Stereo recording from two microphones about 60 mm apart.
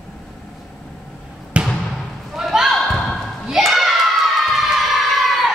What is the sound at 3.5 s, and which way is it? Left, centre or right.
Children shouting, centre.